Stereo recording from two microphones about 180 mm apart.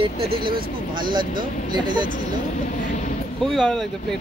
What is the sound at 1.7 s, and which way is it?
Speech, 25° right (ahead or behind).